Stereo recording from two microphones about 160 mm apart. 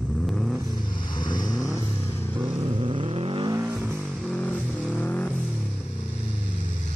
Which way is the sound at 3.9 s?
5° left (ahead or behind).